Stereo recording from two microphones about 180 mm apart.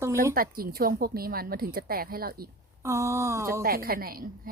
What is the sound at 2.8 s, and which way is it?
Speech, 15° right (ahead or behind).